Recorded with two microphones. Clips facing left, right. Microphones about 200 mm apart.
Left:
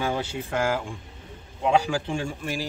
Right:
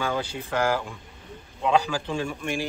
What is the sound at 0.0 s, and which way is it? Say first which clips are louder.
Speech: left 1 dB; 25° left (ahead or behind).